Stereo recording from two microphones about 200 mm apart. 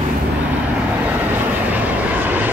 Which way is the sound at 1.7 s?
10° right (ahead or behind).